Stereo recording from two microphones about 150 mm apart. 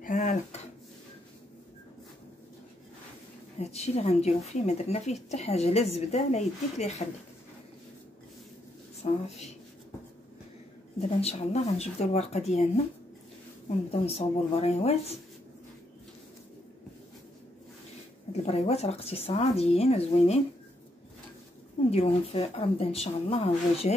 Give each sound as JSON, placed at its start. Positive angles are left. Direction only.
{"t": 0.0, "sound": "a sound", "side_deg": 55}
{"t": 3.5, "sound": "speech", "side_deg": 45}
{"t": 9.0, "sound": "speech", "side_deg": 45}
{"t": 11.0, "sound": "speech", "side_deg": 45}
{"t": 14.0, "sound": "speech", "side_deg": 40}
{"t": 18.3, "sound": "speech", "side_deg": 45}
{"t": 21.9, "sound": "speech", "side_deg": 40}